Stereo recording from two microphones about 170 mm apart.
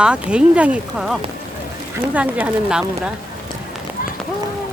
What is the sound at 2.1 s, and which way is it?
Speech, 10° right (ahead or behind).